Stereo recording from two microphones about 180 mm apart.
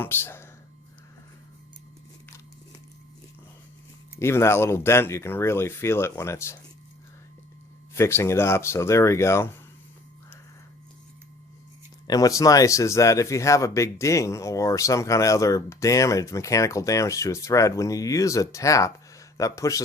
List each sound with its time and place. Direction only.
0.0 s speech: 10° left (ahead or behind)
4.2 s speech: 15° left (ahead or behind)
7.9 s speech: 15° left (ahead or behind)
12.0 s speech: 20° left (ahead or behind)